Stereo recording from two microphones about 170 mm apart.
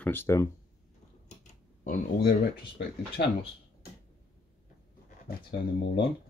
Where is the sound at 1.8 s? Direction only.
55° left (ahead or behind).